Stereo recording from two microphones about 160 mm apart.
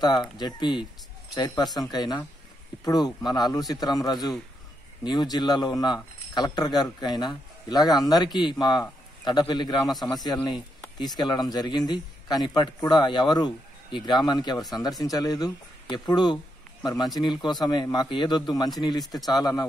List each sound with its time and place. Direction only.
0.0 s speech: 25° left (ahead or behind)